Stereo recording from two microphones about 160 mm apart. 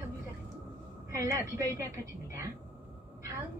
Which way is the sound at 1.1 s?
20° right (ahead or behind).